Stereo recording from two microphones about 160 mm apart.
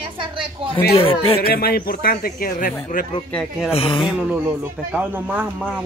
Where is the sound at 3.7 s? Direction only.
35° left (ahead or behind).